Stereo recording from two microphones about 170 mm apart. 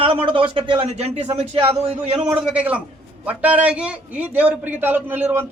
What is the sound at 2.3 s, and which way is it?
A man's voice, 10° right (ahead or behind).